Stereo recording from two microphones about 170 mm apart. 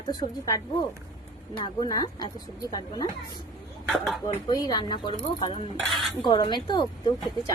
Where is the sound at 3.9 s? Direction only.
Centre (ahead or behind).